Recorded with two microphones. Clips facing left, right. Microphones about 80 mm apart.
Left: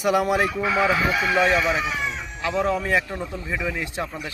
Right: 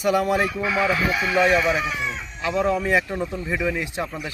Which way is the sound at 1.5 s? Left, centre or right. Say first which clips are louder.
Right 1 dB; centre.